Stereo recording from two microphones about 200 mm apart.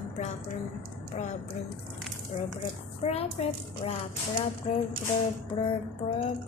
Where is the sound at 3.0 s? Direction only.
30° left (ahead or behind).